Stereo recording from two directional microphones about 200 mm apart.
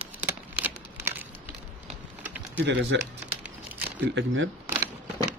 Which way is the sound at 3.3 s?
10° right (ahead or behind).